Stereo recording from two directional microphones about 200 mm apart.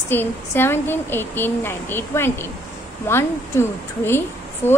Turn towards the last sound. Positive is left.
turn(degrees=10)  # may be behind; listen again after turning